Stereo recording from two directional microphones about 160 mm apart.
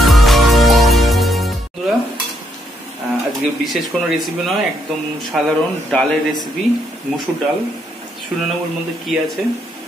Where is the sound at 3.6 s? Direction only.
Centre (ahead or behind).